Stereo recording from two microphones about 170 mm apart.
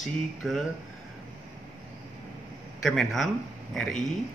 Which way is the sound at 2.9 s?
Centre (ahead or behind).